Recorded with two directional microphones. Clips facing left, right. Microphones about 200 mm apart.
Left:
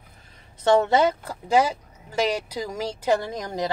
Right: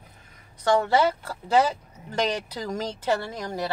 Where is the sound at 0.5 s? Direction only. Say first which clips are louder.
Left 3 dB; 25° left (ahead or behind).